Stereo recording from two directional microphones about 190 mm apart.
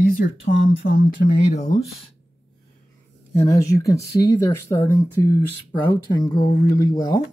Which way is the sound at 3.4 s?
15° left (ahead or behind).